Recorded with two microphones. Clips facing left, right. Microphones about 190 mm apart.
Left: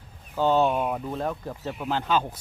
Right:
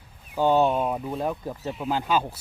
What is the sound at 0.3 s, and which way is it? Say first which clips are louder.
Speech: right 1 dB; 15° right (ahead or behind).